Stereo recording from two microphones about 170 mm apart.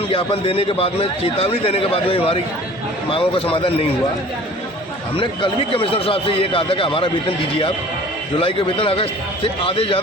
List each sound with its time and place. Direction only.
0.1 s a man's voice: 30° left (ahead or behind)
5.1 s a man's voice: 30° left (ahead or behind)
8.4 s a man's voice: 30° left (ahead or behind)